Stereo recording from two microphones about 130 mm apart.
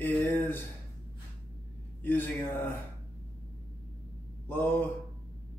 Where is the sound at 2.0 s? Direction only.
15° left (ahead or behind).